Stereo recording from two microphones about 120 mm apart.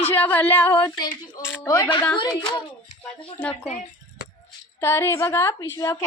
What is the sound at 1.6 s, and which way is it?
Speech, 30° left (ahead or behind).